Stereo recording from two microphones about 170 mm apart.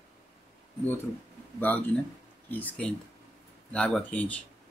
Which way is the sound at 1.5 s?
10° left (ahead or behind).